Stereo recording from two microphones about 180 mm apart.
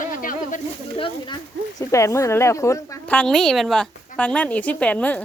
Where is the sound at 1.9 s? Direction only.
15° left (ahead or behind).